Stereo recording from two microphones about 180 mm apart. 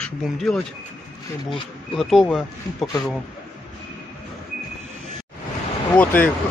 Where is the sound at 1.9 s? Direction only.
Centre (ahead or behind).